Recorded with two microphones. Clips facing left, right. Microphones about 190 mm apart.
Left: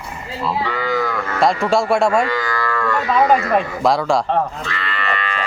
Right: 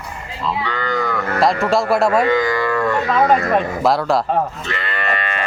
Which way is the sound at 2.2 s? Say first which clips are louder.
Right 5 dB; 20° right (ahead or behind).